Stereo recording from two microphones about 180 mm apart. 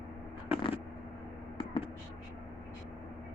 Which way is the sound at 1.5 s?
30° left (ahead or behind).